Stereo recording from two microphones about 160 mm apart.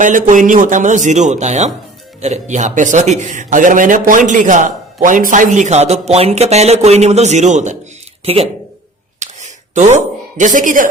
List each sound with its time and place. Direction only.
0.0 s a man's voice: 55° right (ahead or behind)
8.2 s speech: 40° right (ahead or behind)
9.1 s a sound: 50° right (ahead or behind)